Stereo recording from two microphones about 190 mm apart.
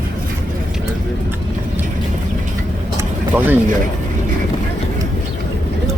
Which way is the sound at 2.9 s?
10° right (ahead or behind).